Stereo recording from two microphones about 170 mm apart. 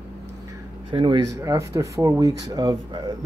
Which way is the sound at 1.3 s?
20° right (ahead or behind).